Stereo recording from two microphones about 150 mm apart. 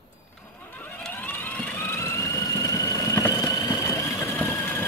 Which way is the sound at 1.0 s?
10° left (ahead or behind).